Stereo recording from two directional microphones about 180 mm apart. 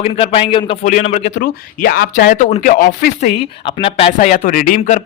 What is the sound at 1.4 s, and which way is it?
Speech, 55° left (ahead or behind).